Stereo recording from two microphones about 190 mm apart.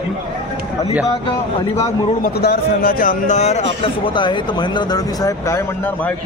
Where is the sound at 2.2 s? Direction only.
55° left (ahead or behind); by 3.6 s 35° left (ahead or behind).